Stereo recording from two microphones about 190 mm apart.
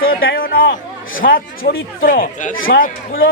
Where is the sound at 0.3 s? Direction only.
50° left (ahead or behind).